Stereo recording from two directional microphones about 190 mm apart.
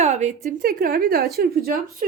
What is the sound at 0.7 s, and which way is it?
A woman's voice, 50° right (ahead or behind).